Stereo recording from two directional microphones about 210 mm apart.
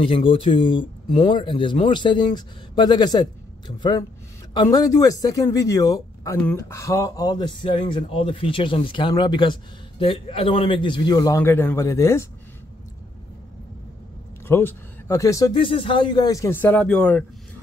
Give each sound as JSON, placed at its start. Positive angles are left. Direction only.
{"t": 0.0, "sound": "speech", "side_deg": 25}
{"t": 14.5, "sound": "speech", "side_deg": 10}